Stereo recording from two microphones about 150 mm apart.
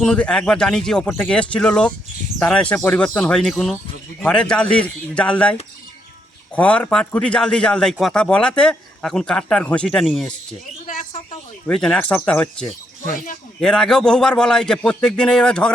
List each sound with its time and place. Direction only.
0.0 s a man's voice: 5° left (ahead or behind)
6.6 s a man's voice: 10° left (ahead or behind)
10.8 s a sound: 60° left (ahead or behind)
11.6 s a man's voice: 5° left (ahead or behind)